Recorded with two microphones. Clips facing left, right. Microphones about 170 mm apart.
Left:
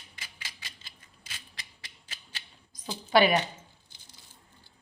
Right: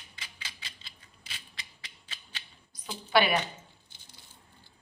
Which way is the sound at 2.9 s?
40° left (ahead or behind).